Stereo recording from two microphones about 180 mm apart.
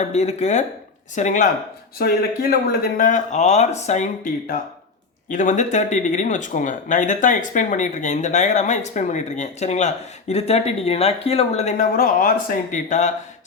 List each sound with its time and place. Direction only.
0.0 s speech: 40° left (ahead or behind)
2.0 s speech: 55° left (ahead or behind)